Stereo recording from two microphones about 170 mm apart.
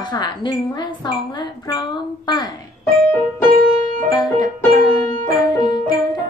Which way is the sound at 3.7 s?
50° right (ahead or behind).